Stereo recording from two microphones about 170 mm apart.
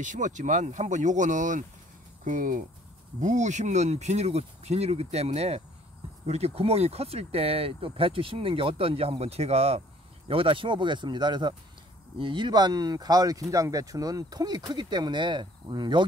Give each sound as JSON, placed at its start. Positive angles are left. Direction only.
{"t": 0.0, "sound": "speech", "side_deg": -50}